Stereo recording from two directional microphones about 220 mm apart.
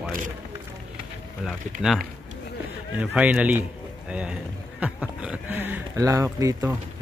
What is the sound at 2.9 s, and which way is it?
Speech, 5° right (ahead or behind).